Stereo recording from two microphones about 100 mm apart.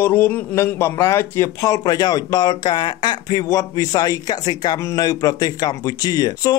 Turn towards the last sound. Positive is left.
turn(degrees=40)  # may be behind; listen again after turning